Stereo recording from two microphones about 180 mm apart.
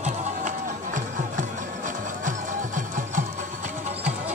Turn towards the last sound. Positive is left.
turn(degrees=-45)  # may be behind; listen again after turning